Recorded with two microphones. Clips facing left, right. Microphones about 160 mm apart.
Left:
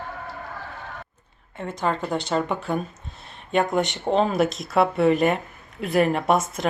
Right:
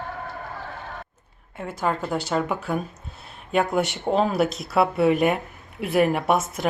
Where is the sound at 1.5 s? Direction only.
5° right (ahead or behind).